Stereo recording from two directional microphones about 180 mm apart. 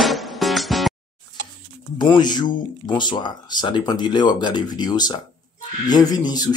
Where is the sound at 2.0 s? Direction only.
25° left (ahead or behind).